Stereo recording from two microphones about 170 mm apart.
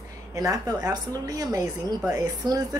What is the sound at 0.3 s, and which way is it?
A woman's voice, 20° right (ahead or behind).